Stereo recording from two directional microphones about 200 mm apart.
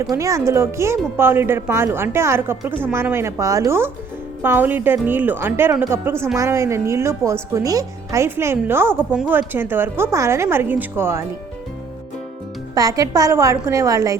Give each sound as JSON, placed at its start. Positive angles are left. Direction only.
{"t": 0.0, "sound": "speech", "side_deg": -15}
{"t": 12.7, "sound": "speech", "side_deg": -15}